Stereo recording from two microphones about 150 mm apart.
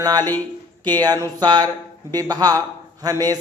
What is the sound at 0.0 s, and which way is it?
Speech, 25° right (ahead or behind).